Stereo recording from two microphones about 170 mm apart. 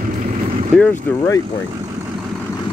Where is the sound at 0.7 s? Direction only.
Centre (ahead or behind).